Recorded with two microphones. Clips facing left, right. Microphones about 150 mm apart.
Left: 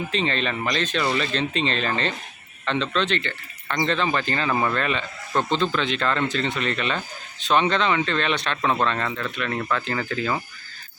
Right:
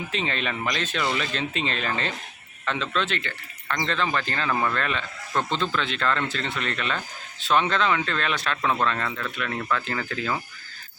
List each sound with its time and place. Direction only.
0.1 s speech: 10° right (ahead or behind)
4.0 s speech: 5° left (ahead or behind)
5.5 s a man's voice: 20° left (ahead or behind)
5.8 s speech: centre (ahead or behind)
7.5 s speech: 5° right (ahead or behind)